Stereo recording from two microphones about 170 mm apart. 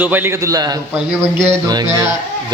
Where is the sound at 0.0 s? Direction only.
10° right (ahead or behind).